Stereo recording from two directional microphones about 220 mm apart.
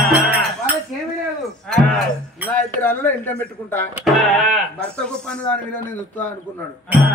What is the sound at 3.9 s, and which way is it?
Speech, centre (ahead or behind).